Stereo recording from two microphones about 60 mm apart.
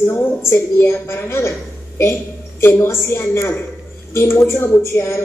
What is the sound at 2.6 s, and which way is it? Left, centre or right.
A woman's voice, left.